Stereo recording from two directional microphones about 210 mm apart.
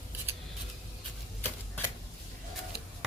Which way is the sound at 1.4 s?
10° left (ahead or behind).